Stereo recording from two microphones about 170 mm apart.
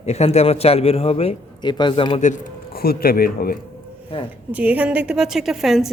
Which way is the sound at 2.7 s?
60° left (ahead or behind).